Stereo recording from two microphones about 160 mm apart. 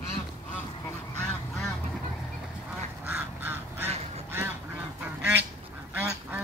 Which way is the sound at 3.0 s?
15° right (ahead or behind).